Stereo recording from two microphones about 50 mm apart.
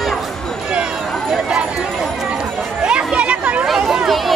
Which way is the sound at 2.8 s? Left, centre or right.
Right.